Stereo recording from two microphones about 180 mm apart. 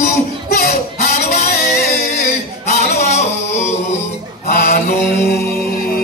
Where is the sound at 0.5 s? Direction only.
60° left (ahead or behind).